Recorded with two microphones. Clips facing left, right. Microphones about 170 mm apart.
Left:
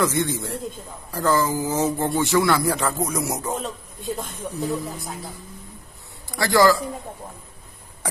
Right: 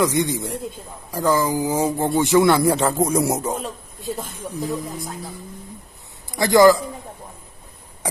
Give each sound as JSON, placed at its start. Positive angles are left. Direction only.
{"t": 0.0, "sound": "speech", "side_deg": -15}
{"t": 3.5, "sound": "speech", "side_deg": -5}
{"t": 6.3, "sound": "a man's voice", "side_deg": -20}